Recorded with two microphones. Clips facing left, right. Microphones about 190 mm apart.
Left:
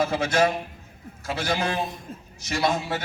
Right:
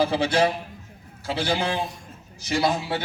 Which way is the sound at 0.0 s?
30° right (ahead or behind).